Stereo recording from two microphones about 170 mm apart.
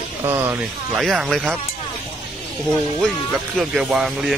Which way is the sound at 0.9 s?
5° right (ahead or behind).